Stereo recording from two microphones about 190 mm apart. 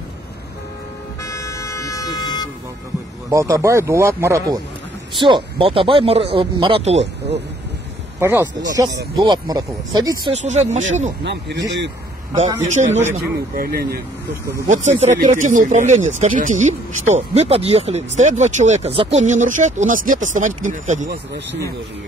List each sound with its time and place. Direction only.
1.2 s vehicle: 15° left (ahead or behind)
3.3 s speech: 15° right (ahead or behind)
5.2 s speech: 25° right (ahead or behind)
8.2 s speech: 15° right (ahead or behind)
10.3 s speech: 35° right (ahead or behind)
11.2 s speech: 65° right (ahead or behind)
12.9 s speech: 40° right (ahead or behind)
14.7 s speech: 40° right (ahead or behind)